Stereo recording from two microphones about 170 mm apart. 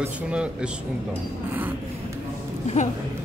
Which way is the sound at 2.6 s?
45° left (ahead or behind).